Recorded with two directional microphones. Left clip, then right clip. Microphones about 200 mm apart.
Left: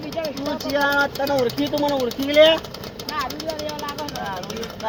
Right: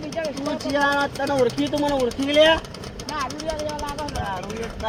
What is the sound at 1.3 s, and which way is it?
Speech, 40° left (ahead or behind).